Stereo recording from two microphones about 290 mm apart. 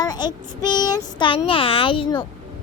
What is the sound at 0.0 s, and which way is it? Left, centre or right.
A child's voice, centre.